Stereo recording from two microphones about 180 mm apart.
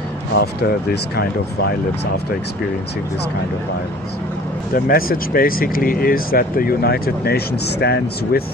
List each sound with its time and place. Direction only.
0.4 s speech: 60° left (ahead or behind)
4.7 s speech: 55° left (ahead or behind)